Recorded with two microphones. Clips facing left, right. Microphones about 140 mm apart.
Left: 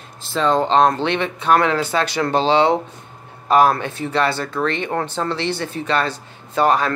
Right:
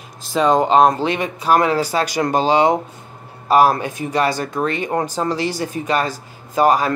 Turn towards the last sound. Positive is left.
turn(degrees=-10)  # may be behind; listen again after turning